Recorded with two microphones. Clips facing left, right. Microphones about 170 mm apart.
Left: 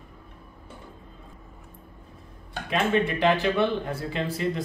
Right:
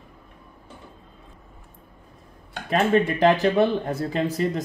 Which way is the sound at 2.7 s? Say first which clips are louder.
Right 4 dB; 40° right (ahead or behind).